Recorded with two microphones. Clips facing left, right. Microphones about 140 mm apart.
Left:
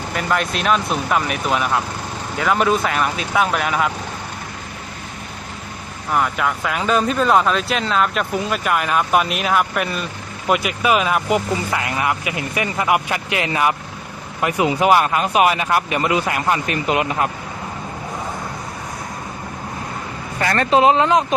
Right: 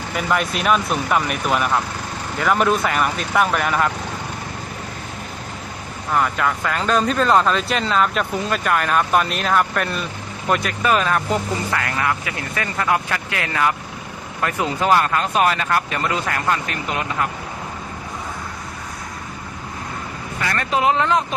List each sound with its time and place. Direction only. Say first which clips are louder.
0.1 s speech: even; centre (ahead or behind)
6.1 s speech: even; 5° left (ahead or behind)
20.4 s speech: left 5 dB; 40° left (ahead or behind)
20.7 s speech: left 4 dB; 25° left (ahead or behind)